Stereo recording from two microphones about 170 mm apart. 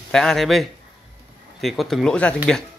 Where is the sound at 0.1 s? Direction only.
5° left (ahead or behind).